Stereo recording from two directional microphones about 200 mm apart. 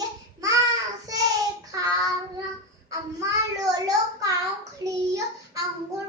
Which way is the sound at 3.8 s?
15° right (ahead or behind).